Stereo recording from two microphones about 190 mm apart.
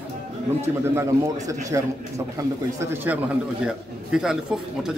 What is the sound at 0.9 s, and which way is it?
A man's voice, 15° right (ahead or behind).